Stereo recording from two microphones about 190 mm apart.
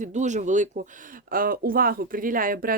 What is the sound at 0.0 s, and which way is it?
Speech, 40° right (ahead or behind).